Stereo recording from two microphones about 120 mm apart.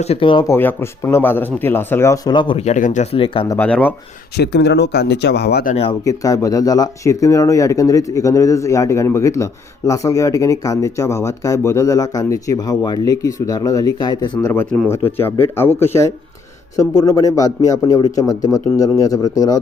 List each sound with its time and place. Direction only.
0.0 s speech: 50° left (ahead or behind)
0.4 s speech: 20° left (ahead or behind)
2.3 s speech: 40° left (ahead or behind)
2.6 s speech: 80° left
3.2 s speech: 50° left (ahead or behind)
3.6 s speech: 10° left (ahead or behind)
5.7 s speech: 90° left
6.1 s speech: 30° left (ahead or behind)
14.4 s speech: 20° left (ahead or behind)